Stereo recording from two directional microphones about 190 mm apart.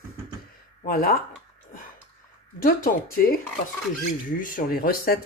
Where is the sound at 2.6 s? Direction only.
50° left (ahead or behind).